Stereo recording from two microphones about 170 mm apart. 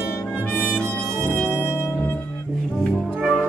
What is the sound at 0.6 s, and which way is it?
Brass instrument, 5° left (ahead or behind).